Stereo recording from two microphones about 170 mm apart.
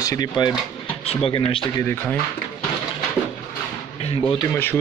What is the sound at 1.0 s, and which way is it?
Speech, 35° left (ahead or behind).